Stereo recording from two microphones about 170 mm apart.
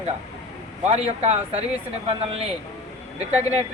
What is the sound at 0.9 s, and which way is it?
Speech, 35° right (ahead or behind).